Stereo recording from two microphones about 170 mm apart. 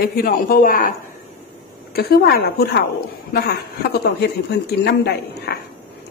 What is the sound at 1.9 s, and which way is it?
Speech, 70° left (ahead or behind).